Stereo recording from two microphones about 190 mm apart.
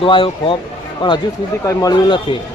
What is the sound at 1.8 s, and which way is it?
Speech, 25° left (ahead or behind).